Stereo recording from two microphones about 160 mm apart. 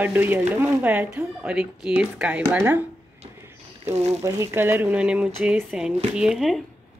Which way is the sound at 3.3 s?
15° right (ahead or behind).